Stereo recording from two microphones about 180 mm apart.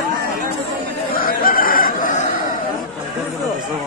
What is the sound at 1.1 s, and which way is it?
Chicken, 55° left (ahead or behind).